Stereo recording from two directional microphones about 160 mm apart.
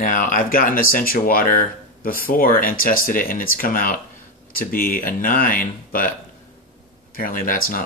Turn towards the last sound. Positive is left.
turn(degrees=60)  # may be behind; listen again after turning